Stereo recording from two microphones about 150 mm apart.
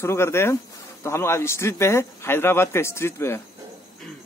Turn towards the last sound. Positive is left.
turn(degrees=15)  # may be behind; listen again after turning